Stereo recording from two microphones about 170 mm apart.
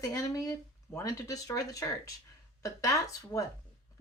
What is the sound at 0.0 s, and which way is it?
A woman's voice, 20° left (ahead or behind).